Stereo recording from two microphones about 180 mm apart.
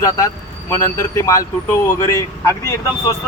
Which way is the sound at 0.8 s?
20° left (ahead or behind).